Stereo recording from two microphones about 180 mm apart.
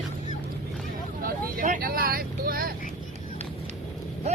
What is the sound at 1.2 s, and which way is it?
Speech, 50° right (ahead or behind).